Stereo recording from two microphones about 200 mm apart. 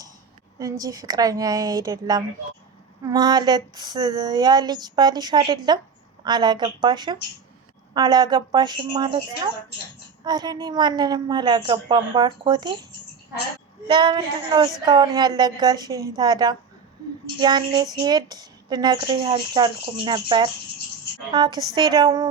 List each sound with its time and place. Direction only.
0.6 s speech: 20° right (ahead or behind)
13.8 s speech: 25° right (ahead or behind)